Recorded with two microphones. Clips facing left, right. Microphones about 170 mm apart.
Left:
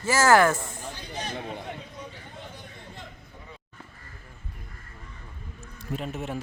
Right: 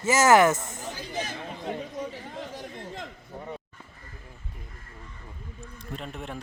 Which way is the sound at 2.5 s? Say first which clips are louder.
Right 6 dB; 90° right.